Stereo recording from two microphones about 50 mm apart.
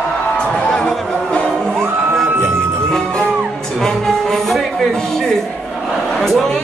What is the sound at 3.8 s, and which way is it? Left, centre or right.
Music, centre.